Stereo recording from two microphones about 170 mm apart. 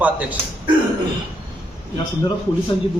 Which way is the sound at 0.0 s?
10° right (ahead or behind).